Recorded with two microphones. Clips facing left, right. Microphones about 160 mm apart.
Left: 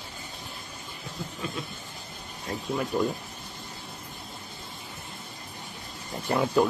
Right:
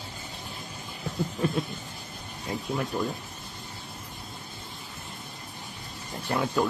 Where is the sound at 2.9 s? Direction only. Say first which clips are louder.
Left 5 dB; centre (ahead or behind).